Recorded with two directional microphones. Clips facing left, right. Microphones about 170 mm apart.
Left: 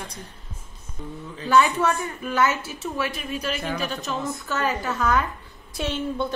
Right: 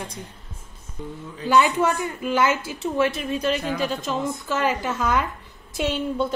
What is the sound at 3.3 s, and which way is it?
Speech, 30° right (ahead or behind).